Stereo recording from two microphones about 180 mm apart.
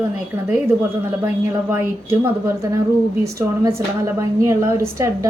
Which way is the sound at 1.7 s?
15° right (ahead or behind).